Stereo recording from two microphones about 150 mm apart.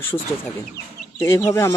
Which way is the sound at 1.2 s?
20° left (ahead or behind).